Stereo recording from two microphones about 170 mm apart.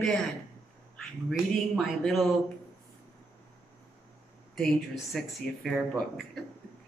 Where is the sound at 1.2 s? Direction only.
Centre (ahead or behind).